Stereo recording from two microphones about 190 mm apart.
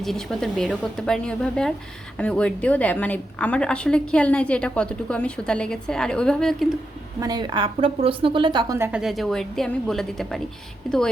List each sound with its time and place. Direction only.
0.0 s a woman's voice: centre (ahead or behind)
7.2 s speech: 20° right (ahead or behind)
8.8 s a woman's voice: 5° right (ahead or behind)